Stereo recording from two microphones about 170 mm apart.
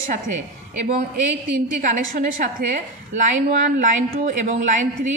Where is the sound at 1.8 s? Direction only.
50° right (ahead or behind).